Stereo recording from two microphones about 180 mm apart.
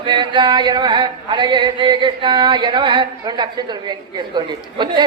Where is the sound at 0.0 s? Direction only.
25° right (ahead or behind).